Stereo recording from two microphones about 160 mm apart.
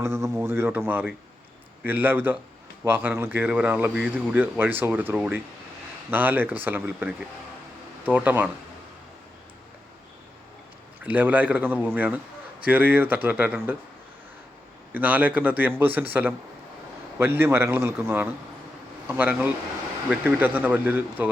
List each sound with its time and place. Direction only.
0.0 s speech: 15° right (ahead or behind)
8.1 s speech: 10° right (ahead or behind)
11.0 s speech: 10° right (ahead or behind)
14.9 s speech: 10° right (ahead or behind)